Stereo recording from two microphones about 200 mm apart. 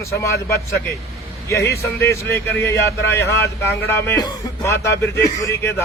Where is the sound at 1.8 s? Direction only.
15° left (ahead or behind).